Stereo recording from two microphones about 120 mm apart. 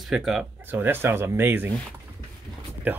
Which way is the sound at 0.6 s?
15° right (ahead or behind).